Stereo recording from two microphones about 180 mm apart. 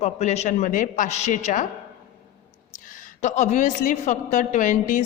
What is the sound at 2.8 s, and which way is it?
A woman's voice, 50° left (ahead or behind).